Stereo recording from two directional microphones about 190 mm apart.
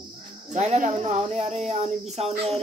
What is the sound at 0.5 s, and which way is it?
Speech, 35° right (ahead or behind).